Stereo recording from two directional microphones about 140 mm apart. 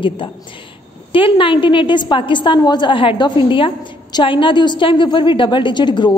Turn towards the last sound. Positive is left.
turn(degrees=35)  # may be behind; listen again after turning